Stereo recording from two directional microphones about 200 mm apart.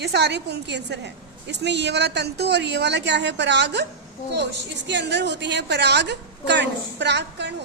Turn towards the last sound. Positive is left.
turn(degrees=-60)  # may be behind; listen again after turning